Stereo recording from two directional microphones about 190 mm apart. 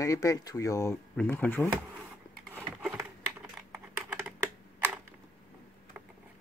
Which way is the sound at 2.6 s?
10° right (ahead or behind).